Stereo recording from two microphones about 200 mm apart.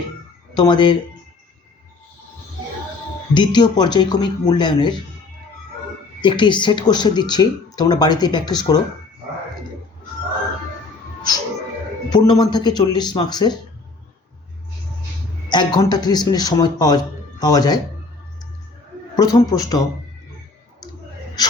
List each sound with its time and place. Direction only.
0.5 s speech: 20° left (ahead or behind)
3.3 s speech: 20° left (ahead or behind)
6.2 s speech: 25° left (ahead or behind)
12.1 s speech: 20° left (ahead or behind)
15.4 s speech: 20° left (ahead or behind)
19.1 s a man's voice: 20° left (ahead or behind)